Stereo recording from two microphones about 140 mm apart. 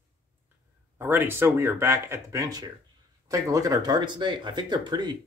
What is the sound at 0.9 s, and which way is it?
Speech, 15° right (ahead or behind).